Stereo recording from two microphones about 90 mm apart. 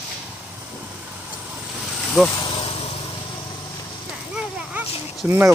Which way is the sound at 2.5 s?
90° left.